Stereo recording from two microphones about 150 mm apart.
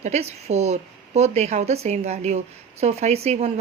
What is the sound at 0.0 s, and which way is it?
Speech, 45° right (ahead or behind).